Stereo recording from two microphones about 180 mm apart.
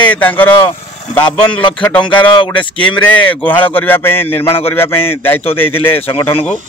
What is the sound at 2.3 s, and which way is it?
Speech, 25° left (ahead or behind).